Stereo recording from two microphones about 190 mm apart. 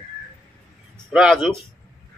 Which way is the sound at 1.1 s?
Centre (ahead or behind).